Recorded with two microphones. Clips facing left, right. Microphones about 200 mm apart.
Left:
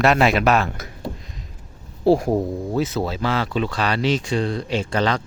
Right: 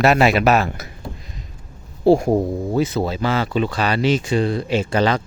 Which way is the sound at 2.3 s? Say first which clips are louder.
Right 3 dB; 20° right (ahead or behind).